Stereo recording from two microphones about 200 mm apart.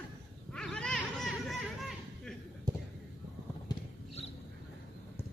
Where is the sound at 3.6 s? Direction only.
30° left (ahead or behind).